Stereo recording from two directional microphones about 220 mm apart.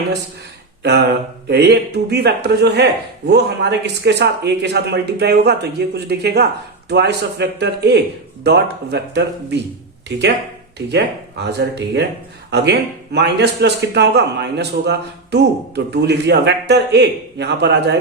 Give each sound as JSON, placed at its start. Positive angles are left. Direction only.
{"t": 0.8, "sound": "a man's voice", "side_deg": -50}
{"t": 11.4, "sound": "a man's voice", "side_deg": -50}